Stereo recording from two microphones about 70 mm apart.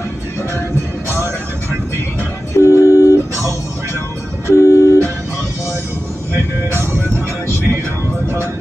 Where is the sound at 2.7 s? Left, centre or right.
Left.